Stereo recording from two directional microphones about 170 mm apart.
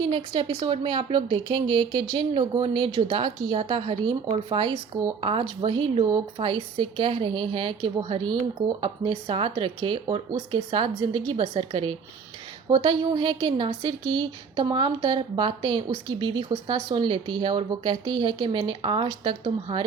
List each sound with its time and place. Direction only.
0.1 s a woman's voice: 30° right (ahead or behind)